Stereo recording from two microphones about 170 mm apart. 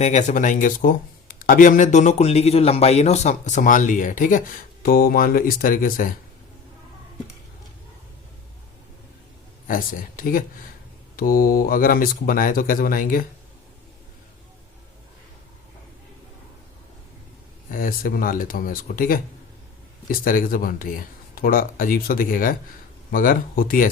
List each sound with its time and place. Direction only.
0.0 s speech: 45° left (ahead or behind)
9.6 s speech: 55° left (ahead or behind)
17.7 s speech: 55° left (ahead or behind)